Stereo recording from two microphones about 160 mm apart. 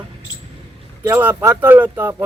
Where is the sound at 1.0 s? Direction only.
10° right (ahead or behind).